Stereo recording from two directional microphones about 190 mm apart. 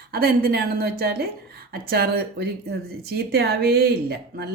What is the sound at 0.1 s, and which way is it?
A woman's voice, 55° right (ahead or behind).